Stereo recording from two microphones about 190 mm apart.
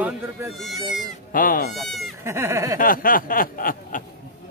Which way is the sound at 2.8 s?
50° left (ahead or behind).